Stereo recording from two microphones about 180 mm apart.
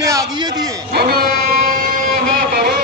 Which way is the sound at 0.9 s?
60° right (ahead or behind).